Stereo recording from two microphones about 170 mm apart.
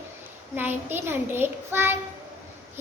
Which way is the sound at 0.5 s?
10° right (ahead or behind).